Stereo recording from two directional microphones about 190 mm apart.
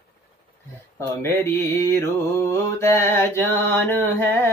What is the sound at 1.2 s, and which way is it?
Mantra, 15° left (ahead or behind).